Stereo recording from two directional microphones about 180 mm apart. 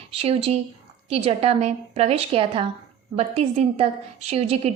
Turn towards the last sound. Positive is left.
turn(degrees=-35)  # may be behind; listen again after turning